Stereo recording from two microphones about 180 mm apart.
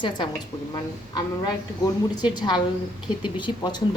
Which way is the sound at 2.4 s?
25° left (ahead or behind).